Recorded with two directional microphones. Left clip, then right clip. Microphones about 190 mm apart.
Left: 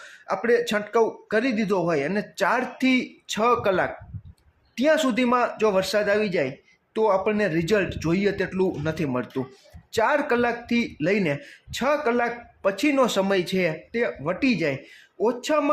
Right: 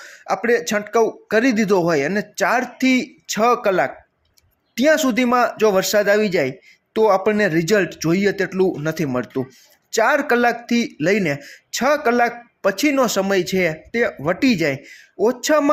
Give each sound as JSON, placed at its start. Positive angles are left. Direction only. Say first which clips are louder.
{"t": 0.0, "sound": "speech", "louder": "right 5 dB", "side_deg": -15}